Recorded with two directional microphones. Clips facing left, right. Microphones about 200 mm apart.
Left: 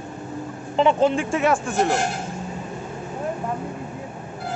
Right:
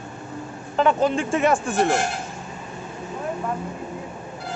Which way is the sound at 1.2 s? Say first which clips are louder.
Right 1 dB; 5° left (ahead or behind).